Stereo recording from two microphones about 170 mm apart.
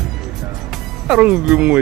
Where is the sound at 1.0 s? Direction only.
5° right (ahead or behind).